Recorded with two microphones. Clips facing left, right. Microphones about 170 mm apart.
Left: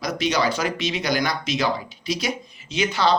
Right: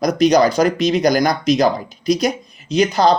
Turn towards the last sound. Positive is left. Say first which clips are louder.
# right 7 dB
turn(degrees=-40)  # may be behind; listen again after turning